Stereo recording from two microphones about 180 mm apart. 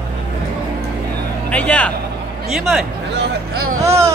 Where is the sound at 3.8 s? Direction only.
15° right (ahead or behind).